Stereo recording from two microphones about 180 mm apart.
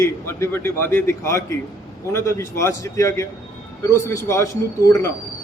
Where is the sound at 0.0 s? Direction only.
15° left (ahead or behind).